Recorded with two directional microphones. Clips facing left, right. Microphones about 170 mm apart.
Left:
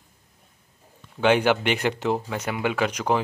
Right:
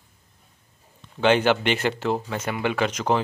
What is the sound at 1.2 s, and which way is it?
Speech, 10° left (ahead or behind).